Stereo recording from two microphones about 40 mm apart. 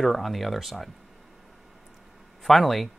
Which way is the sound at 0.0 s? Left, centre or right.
Centre.